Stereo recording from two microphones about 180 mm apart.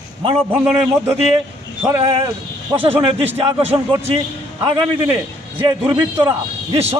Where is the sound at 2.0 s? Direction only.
30° right (ahead or behind).